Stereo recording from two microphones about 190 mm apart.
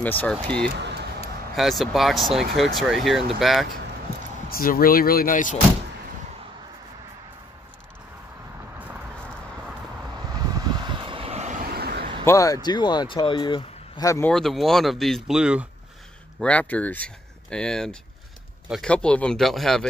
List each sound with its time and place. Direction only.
0.0 s speech: 10° left (ahead or behind)
0.7 s a sound: 65° right (ahead or behind)
1.5 s speech: centre (ahead or behind)
4.5 s speech: 50° left (ahead or behind)
8.7 s a sound: 10° right (ahead or behind)
10.3 s vehicle: 20° right (ahead or behind)
11.7 s a sound: 55° right (ahead or behind)
12.3 s speech: 15° left (ahead or behind)
14.3 s speech: centre (ahead or behind)
16.3 s speech: 5° left (ahead or behind)